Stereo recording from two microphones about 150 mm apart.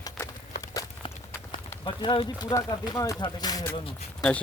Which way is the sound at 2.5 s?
25° left (ahead or behind).